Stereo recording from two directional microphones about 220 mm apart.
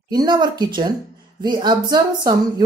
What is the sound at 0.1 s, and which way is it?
A woman's voice, 20° right (ahead or behind).